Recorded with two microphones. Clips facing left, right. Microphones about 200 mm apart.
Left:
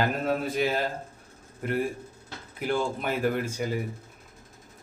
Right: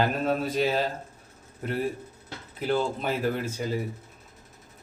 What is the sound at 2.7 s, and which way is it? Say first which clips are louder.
Speech: right 1 dB; 50° left (ahead or behind).